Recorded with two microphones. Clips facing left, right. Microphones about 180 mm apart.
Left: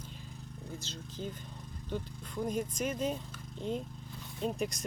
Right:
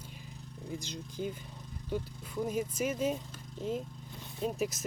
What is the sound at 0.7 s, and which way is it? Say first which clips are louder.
Speech: right 5 dB; 15° right (ahead or behind).